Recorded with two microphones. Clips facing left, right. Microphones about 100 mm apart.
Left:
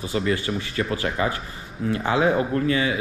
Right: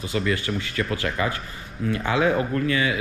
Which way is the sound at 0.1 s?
35° left (ahead or behind).